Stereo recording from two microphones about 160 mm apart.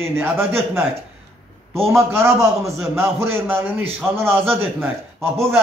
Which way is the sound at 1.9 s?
15° right (ahead or behind).